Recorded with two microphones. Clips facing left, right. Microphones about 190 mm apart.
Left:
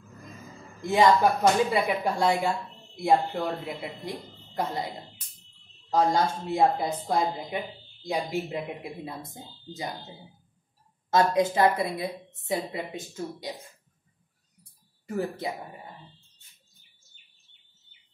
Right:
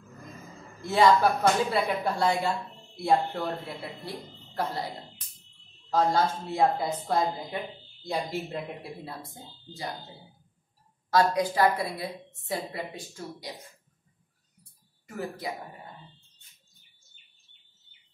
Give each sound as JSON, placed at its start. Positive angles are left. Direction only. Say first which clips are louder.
{"t": 0.8, "sound": "speech", "louder": "left 1 dB", "side_deg": 15}
{"t": 11.3, "sound": "a woman's voice", "louder": "left 2 dB", "side_deg": 25}
{"t": 15.1, "sound": "a woman's voice", "louder": "left 4 dB", "side_deg": 25}